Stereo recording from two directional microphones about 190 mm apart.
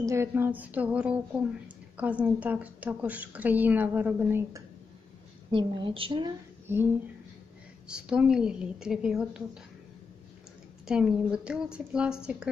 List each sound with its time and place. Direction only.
0.0 s a woman's voice: 15° right (ahead or behind)
5.5 s a woman's voice: 25° right (ahead or behind)
6.7 s a woman's voice: 10° right (ahead or behind)
7.9 s a woman's voice: 5° right (ahead or behind)
10.9 s a woman's voice: 5° right (ahead or behind)